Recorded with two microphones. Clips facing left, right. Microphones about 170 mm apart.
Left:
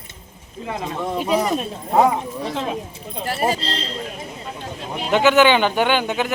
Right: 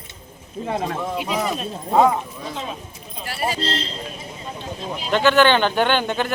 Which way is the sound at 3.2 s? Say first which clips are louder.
Left 5 dB; 45° left (ahead or behind).